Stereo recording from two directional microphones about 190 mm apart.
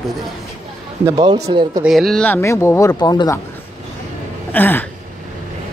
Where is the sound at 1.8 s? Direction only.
Centre (ahead or behind); by 3.4 s 20° left (ahead or behind).